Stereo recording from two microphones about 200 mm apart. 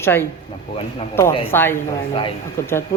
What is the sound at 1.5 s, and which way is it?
A man's voice, 10° left (ahead or behind).